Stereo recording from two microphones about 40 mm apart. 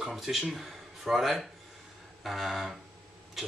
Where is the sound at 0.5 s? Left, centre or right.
Centre.